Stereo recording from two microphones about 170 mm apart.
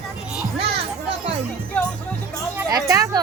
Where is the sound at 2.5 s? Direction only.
20° right (ahead or behind).